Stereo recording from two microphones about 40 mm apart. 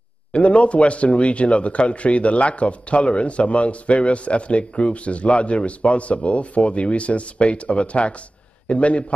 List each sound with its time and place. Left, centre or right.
0.3 s a man's voice: left